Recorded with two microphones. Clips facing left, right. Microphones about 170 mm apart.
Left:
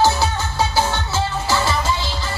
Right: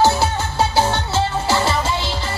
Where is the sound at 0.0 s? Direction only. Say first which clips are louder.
Right 1 dB; 30° right (ahead or behind).